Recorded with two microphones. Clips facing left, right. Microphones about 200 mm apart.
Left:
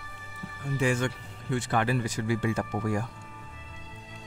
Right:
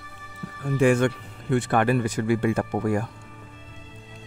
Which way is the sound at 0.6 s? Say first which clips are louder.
Right 8 dB; 55° right (ahead or behind).